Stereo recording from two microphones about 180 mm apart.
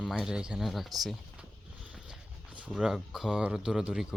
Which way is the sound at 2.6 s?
5° right (ahead or behind).